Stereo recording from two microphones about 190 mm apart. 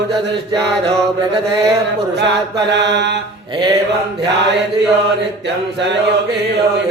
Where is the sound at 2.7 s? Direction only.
65° right (ahead or behind).